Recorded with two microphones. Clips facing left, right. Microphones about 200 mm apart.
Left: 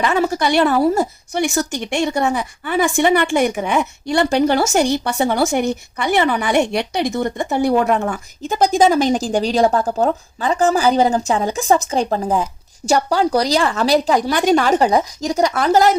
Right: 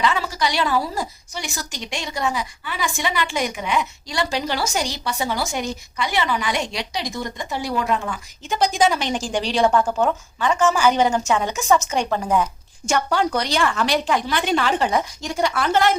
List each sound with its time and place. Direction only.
0.0 s a woman's voice: 50° left (ahead or behind)